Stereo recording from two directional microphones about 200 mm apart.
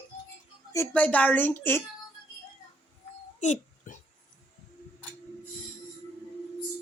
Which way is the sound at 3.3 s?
40° left (ahead or behind).